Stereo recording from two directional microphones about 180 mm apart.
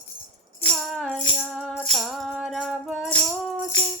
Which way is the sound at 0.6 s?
Centre (ahead or behind).